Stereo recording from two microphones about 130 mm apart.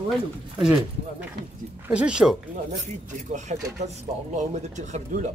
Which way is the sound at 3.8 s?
65° right (ahead or behind).